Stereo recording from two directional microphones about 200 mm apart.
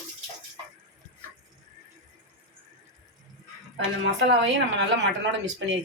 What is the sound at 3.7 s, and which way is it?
Speech, 60° right (ahead or behind).